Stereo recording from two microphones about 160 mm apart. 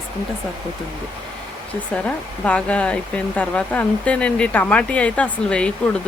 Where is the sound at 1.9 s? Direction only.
10° left (ahead or behind).